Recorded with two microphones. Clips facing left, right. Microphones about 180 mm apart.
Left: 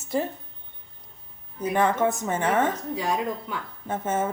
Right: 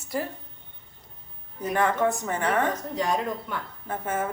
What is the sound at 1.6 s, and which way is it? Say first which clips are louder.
A woman's voice: left 1 dB; 20° left (ahead or behind).